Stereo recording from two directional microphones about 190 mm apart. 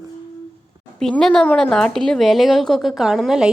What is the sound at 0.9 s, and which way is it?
Speech, 5° left (ahead or behind).